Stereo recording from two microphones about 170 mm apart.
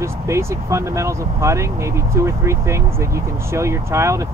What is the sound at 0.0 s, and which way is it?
Speech, 15° right (ahead or behind).